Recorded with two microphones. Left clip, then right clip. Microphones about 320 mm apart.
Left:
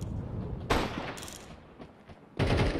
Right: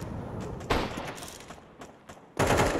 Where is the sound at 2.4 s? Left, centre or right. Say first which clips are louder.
Right 6 dB; right.